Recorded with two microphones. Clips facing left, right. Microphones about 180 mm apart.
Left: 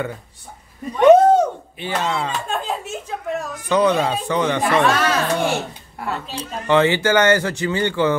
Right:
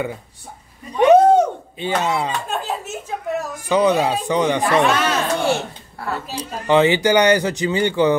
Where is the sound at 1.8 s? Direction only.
15° right (ahead or behind).